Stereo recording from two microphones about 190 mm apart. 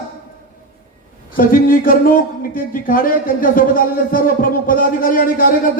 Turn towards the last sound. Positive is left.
turn(degrees=45)  # may be behind; listen again after turning